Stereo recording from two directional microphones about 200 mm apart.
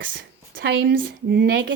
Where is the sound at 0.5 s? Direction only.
55° right (ahead or behind).